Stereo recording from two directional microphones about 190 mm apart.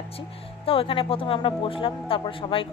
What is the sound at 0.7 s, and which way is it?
Speech, 30° left (ahead or behind).